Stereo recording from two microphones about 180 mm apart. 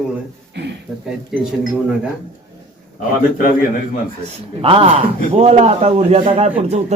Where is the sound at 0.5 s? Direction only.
70° right (ahead or behind).